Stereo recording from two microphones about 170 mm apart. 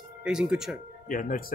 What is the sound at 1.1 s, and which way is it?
Speech, 50° left (ahead or behind).